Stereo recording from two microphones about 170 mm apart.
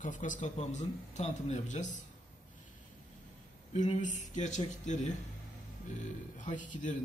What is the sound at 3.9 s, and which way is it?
A man's voice, 45° left (ahead or behind).